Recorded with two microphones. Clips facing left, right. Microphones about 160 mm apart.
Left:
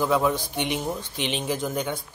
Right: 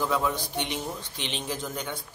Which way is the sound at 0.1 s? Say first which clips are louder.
Left 5 dB; 15° left (ahead or behind).